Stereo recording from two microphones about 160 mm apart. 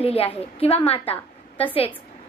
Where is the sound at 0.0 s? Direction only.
35° left (ahead or behind).